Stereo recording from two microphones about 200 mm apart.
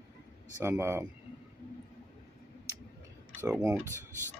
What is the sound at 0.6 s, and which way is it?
Speech, 15° right (ahead or behind).